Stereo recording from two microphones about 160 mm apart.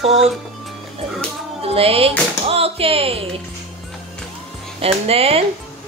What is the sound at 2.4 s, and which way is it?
Speech, 35° right (ahead or behind).